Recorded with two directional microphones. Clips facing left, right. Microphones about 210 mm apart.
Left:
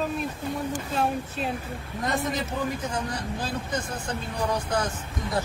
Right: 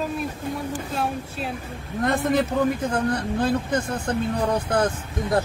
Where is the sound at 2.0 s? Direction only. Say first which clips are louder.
Right 7 dB; 55° right (ahead or behind).